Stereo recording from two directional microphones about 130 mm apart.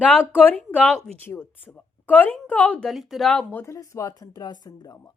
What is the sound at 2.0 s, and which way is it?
Speech, 15° left (ahead or behind).